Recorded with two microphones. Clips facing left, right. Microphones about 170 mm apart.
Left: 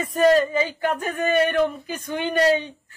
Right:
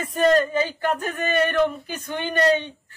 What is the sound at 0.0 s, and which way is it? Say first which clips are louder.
Speech: left 1 dB; 5° left (ahead or behind).